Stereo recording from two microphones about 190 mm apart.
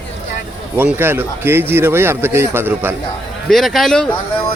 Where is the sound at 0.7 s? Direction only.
10° right (ahead or behind).